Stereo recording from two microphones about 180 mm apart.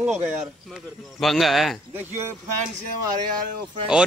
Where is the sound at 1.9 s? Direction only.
10° right (ahead or behind).